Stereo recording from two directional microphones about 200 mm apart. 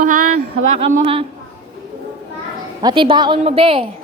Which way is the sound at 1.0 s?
30° right (ahead or behind).